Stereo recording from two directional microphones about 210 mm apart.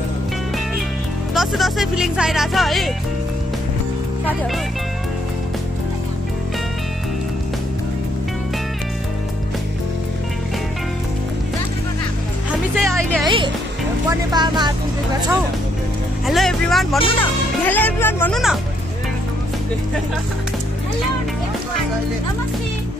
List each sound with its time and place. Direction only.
1.3 s speech: centre (ahead or behind)
12.4 s speech: centre (ahead or behind)
14.3 s speech: 20° right (ahead or behind)
16.3 s speech: centre (ahead or behind)